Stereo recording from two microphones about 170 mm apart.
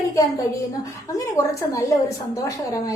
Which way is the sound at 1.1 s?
20° left (ahead or behind).